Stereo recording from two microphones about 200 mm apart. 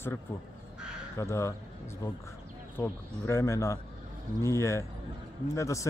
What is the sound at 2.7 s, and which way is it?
Speech, 10° left (ahead or behind).